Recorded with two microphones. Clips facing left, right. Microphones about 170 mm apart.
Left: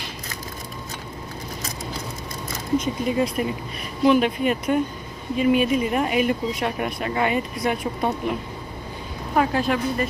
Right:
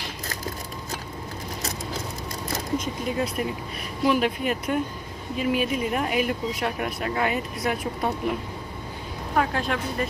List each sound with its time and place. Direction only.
2.8 s speech: centre (ahead or behind)